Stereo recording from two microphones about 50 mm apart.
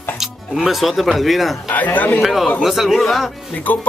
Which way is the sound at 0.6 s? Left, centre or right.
Centre.